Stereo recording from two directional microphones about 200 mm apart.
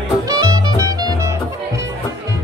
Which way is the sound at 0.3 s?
20° right (ahead or behind).